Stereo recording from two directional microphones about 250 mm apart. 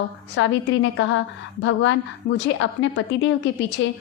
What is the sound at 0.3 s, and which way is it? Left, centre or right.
A woman's voice, left.